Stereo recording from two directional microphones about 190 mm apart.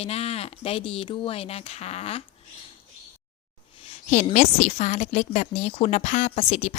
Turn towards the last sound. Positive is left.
turn(degrees=35)  # may be behind; listen again after turning